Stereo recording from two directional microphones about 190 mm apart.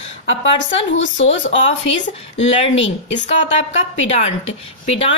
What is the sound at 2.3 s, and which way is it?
Speech, 35° left (ahead or behind).